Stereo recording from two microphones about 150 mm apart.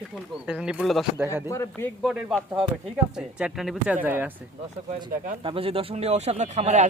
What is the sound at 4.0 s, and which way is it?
Speech, 15° right (ahead or behind).